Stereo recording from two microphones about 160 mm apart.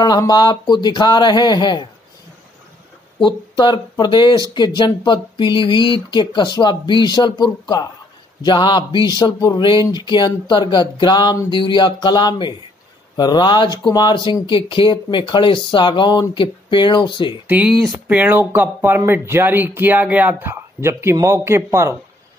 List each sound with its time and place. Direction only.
0.0 s speech: 25° left (ahead or behind)
3.2 s speech: 30° left (ahead or behind)
17.5 s speech: 10° right (ahead or behind)